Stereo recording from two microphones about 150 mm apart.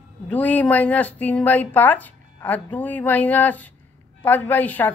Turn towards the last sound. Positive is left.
turn(degrees=10)  # may be behind; listen again after turning